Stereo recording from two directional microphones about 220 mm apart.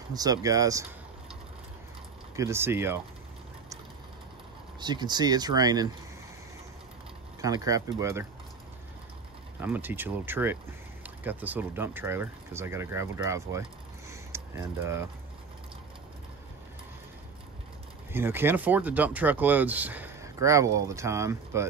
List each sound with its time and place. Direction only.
0.1 s speech: 15° right (ahead or behind)
2.3 s speech: 10° right (ahead or behind)
4.7 s speech: 20° right (ahead or behind)
7.4 s speech: 15° right (ahead or behind)
9.6 s speech: 10° right (ahead or behind)
18.1 s speech: 10° right (ahead or behind)